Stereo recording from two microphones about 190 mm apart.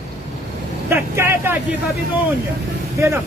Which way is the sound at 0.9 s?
15° right (ahead or behind).